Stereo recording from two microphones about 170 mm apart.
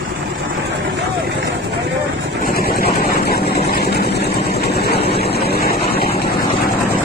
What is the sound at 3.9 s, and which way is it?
Vehicle, 75° left (ahead or behind).